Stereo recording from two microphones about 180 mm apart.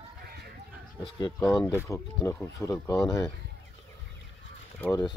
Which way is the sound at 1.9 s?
15° left (ahead or behind).